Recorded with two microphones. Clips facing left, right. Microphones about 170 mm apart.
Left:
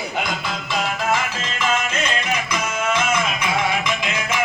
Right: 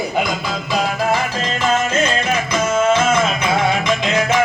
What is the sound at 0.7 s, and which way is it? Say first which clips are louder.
Music: right 4 dB; 40° right (ahead or behind).